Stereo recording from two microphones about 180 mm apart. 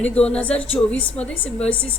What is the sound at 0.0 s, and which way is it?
A woman's voice, 5° left (ahead or behind).